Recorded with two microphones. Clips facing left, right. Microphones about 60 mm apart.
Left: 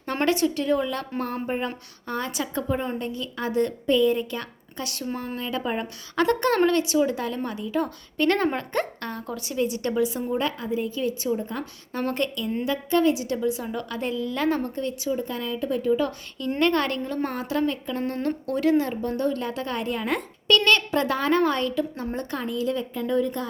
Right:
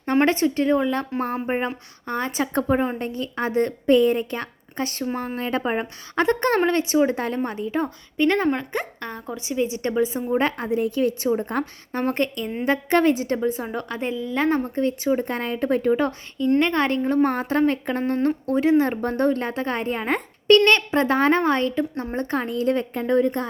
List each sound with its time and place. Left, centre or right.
0.3 s speech: right
7.9 s speech: centre
9.0 s speech: centre
10.7 s speech: right
12.1 s speech: right
12.6 s speech: right
15.1 s speech: right
16.6 s speech: right
17.2 s speech: right
18.5 s speech: right
18.8 s speech: right